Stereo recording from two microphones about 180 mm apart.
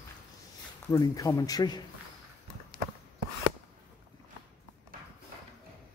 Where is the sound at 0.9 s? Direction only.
20° left (ahead or behind).